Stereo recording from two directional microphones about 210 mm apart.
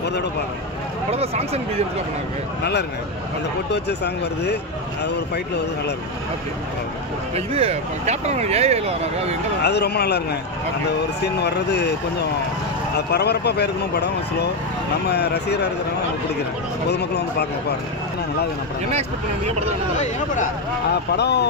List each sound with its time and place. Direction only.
1.1 s speech: 30° right (ahead or behind)
3.7 s speech: 55° left (ahead or behind)
7.3 s speech: 30° right (ahead or behind)
9.6 s speech: 50° left (ahead or behind)
11.4 s speech: 55° left (ahead or behind)
16.9 s speech: 50° left (ahead or behind)
18.9 s speech: 30° right (ahead or behind)
21.1 s speech: 50° left (ahead or behind)